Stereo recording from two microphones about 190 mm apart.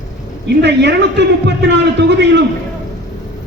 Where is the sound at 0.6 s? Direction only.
65° right (ahead or behind).